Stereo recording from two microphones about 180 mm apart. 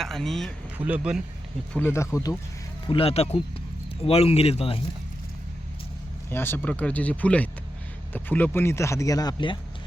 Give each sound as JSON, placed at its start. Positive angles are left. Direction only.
{"t": 0.0, "sound": "speech", "side_deg": 0}
{"t": 1.7, "sound": "speech", "side_deg": 10}
{"t": 2.8, "sound": "speech", "side_deg": 30}
{"t": 6.3, "sound": "speech", "side_deg": 10}